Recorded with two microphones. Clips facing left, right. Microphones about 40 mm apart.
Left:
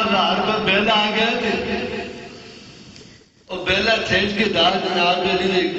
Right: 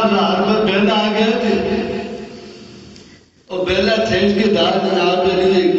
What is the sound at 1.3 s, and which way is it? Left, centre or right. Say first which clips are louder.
Speech: right 5 dB; left.